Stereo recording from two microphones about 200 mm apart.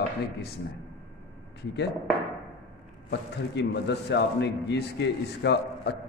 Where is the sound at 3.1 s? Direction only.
55° left (ahead or behind).